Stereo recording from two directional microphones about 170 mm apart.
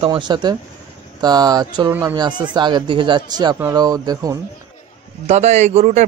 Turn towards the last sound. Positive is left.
turn(degrees=-45)  # may be behind; listen again after turning